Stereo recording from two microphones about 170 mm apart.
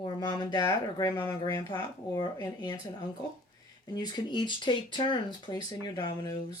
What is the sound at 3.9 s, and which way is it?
Speech, 25° left (ahead or behind).